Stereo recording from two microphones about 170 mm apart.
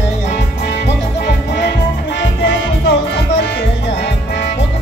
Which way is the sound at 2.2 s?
90° left.